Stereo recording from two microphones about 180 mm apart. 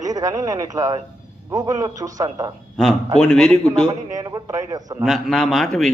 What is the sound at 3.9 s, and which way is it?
Speech, 20° right (ahead or behind).